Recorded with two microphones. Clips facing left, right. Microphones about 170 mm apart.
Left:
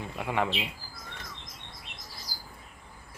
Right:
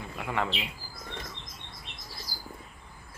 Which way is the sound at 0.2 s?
15° left (ahead or behind).